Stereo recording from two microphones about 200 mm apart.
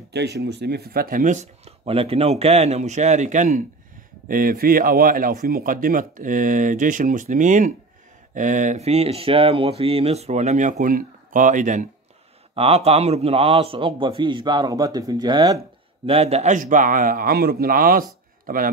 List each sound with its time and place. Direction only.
0.1 s a man's voice: 55° right (ahead or behind); by 15.6 s 20° right (ahead or behind)
16.1 s a man's voice: 30° right (ahead or behind)